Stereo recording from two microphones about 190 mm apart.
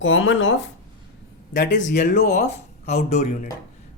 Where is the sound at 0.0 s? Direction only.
85° left.